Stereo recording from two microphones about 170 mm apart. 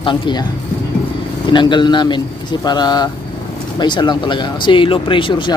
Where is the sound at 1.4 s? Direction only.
25° left (ahead or behind).